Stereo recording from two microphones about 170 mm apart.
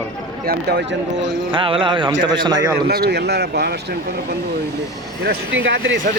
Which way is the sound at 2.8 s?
70° right (ahead or behind).